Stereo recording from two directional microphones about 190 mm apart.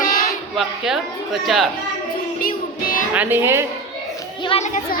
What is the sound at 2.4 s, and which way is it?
Child singing, 50° left (ahead or behind).